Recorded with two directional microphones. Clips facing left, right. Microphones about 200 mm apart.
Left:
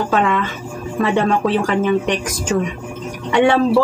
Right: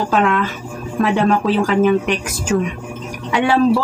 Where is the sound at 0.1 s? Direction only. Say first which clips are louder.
Right 1 dB; centre (ahead or behind).